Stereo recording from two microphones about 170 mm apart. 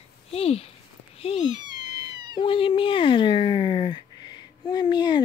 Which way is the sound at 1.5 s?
25° right (ahead or behind).